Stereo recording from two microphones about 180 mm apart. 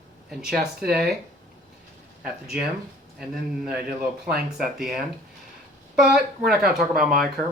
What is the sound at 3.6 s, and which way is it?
Speech, 5° right (ahead or behind).